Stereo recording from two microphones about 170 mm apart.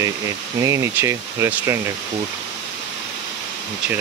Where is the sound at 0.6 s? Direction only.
15° right (ahead or behind).